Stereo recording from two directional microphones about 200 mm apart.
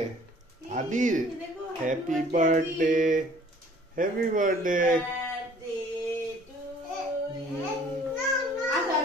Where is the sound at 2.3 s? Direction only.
40° right (ahead or behind).